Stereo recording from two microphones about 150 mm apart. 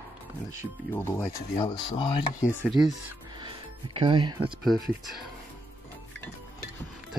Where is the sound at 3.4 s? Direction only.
35° right (ahead or behind).